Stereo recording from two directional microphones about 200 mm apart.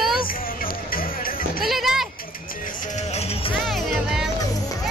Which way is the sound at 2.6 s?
40° left (ahead or behind).